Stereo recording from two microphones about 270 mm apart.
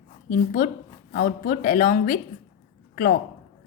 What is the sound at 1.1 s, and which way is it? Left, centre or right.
A woman's voice, left.